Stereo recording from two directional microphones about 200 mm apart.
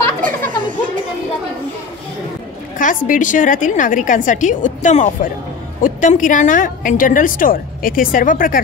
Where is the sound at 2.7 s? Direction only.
40° left (ahead or behind).